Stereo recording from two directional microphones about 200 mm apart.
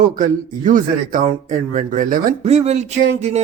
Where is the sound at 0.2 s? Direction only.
40° right (ahead or behind).